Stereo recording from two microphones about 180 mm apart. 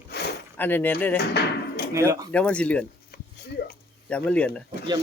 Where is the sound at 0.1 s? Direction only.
65° left (ahead or behind).